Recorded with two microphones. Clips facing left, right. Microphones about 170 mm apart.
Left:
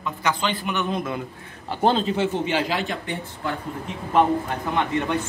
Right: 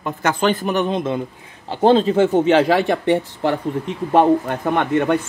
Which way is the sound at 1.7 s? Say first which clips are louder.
Right 7 dB; 35° right (ahead or behind).